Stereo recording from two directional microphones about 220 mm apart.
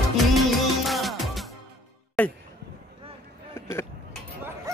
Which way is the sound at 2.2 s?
5° left (ahead or behind).